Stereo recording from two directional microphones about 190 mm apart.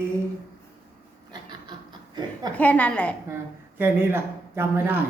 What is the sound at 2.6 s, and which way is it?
Speech, 5° left (ahead or behind).